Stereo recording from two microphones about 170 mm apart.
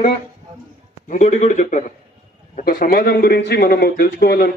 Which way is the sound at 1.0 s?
45° left (ahead or behind).